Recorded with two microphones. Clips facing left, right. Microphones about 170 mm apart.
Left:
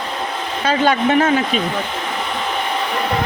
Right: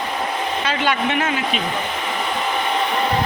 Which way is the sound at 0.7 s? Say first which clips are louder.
Left 8 dB; 40° left (ahead or behind).